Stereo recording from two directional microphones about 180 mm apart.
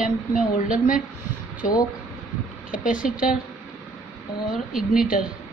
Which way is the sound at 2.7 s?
50° left (ahead or behind).